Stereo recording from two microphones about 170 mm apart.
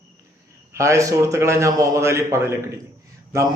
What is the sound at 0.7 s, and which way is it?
A man's voice, 15° right (ahead or behind).